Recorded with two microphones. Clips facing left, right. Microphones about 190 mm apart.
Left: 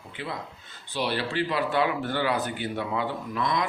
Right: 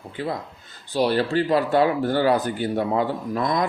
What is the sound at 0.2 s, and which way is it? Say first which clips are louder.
A man's voice: right 7 dB; 40° right (ahead or behind).